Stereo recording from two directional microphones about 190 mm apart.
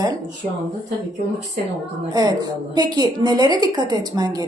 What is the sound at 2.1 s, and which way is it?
A woman's voice, 20° right (ahead or behind).